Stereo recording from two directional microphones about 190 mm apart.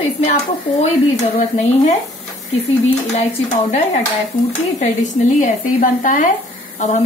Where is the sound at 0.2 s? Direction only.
35° left (ahead or behind).